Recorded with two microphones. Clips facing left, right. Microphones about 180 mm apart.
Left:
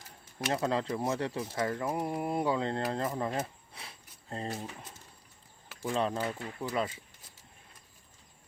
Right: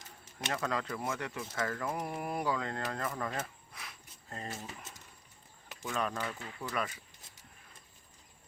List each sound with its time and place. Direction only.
0.5 s speech: 30° left (ahead or behind)